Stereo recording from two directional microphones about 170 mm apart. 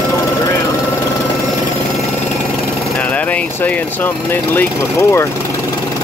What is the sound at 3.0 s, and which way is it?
Speech, 10° left (ahead or behind).